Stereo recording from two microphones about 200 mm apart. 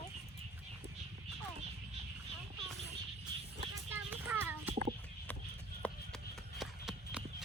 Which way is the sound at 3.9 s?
10° right (ahead or behind).